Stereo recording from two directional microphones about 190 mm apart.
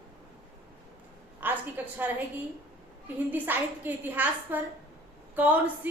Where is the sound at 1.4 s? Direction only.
10° right (ahead or behind).